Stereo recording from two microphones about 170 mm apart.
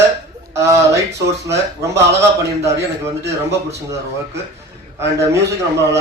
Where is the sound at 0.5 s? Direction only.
15° right (ahead or behind).